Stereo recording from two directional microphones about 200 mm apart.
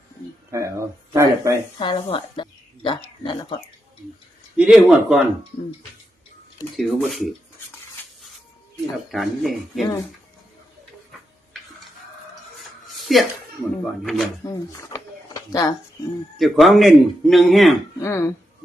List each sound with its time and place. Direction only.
0.5 s speech: 15° right (ahead or behind)
1.8 s speech: 25° left (ahead or behind)
4.5 s speech: 5° right (ahead or behind)
6.7 s speech: centre (ahead or behind)
9.0 s speech: centre (ahead or behind)
13.1 s speech: centre (ahead or behind)
14.4 s speech: 15° left (ahead or behind)
16.4 s speech: centre (ahead or behind)
18.0 s speech: 15° left (ahead or behind)